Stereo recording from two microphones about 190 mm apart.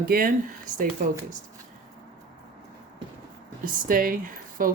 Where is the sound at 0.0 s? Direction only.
50° right (ahead or behind).